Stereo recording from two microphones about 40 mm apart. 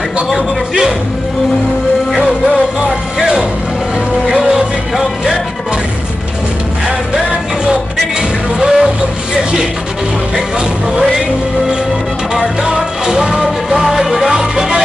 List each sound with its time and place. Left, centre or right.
0.3 s speech: centre
3.2 s vehicle: centre
4.3 s music: centre
8.5 s music: centre
12.4 s music: centre